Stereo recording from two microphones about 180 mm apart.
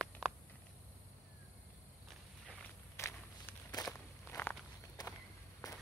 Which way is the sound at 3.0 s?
15° left (ahead or behind).